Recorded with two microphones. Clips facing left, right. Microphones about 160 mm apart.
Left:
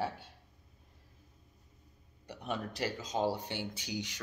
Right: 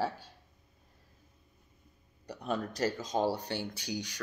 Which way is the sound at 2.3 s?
40° right (ahead or behind).